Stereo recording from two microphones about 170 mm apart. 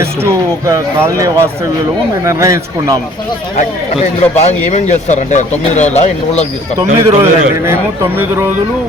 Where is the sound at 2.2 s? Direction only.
20° right (ahead or behind).